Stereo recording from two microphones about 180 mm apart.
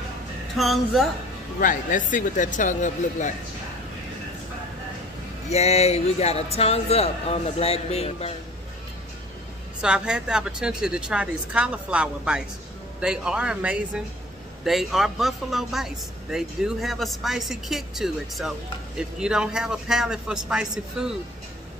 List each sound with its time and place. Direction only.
0.6 s a man's voice: centre (ahead or behind)
1.6 s speech: 45° left (ahead or behind)
5.5 s a man's voice: 35° left (ahead or behind)
9.8 s a man's voice: 5° right (ahead or behind)